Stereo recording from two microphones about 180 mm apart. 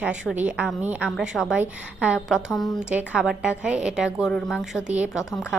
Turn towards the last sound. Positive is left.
turn(degrees=-5)  # may be behind; listen again after turning